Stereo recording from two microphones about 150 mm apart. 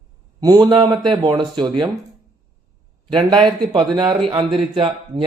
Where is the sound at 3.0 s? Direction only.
30° right (ahead or behind).